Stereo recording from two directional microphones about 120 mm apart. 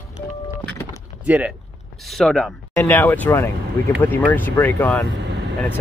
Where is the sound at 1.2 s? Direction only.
10° right (ahead or behind).